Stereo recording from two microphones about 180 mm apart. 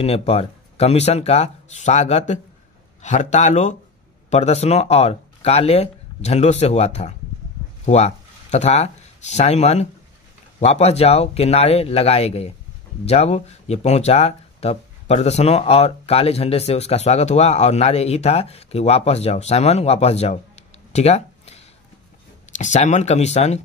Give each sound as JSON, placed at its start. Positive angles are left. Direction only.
{"t": 0.0, "sound": "speech", "side_deg": 35}
{"t": 20.9, "sound": "a sound", "side_deg": 35}
{"t": 22.5, "sound": "speech", "side_deg": 40}